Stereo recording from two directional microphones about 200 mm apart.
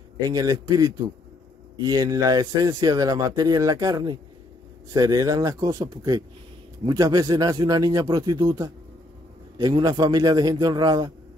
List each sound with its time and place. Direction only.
0.2 s a man's voice: 20° right (ahead or behind)